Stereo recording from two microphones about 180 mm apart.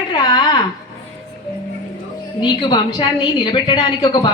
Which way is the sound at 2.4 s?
25° left (ahead or behind).